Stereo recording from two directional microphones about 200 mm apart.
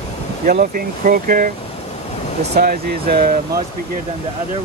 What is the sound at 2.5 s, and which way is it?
Speech, 50° right (ahead or behind).